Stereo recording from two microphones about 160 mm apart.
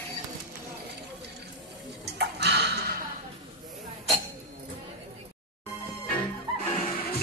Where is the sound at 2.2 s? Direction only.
90° right.